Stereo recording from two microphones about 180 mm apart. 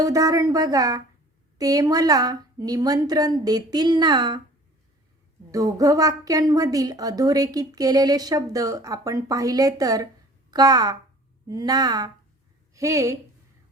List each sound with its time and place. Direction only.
0.0 s a woman's voice: 20° right (ahead or behind)
5.5 s a woman's voice: 20° right (ahead or behind)